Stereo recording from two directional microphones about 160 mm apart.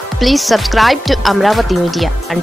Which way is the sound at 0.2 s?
Centre (ahead or behind).